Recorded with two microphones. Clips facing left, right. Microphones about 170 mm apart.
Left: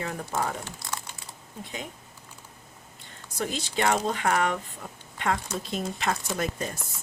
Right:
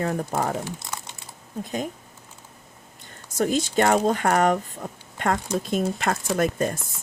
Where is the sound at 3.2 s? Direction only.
45° right (ahead or behind).